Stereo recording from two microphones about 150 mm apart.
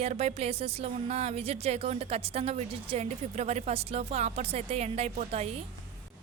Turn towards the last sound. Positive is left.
turn(degrees=-45)  # may be behind; listen again after turning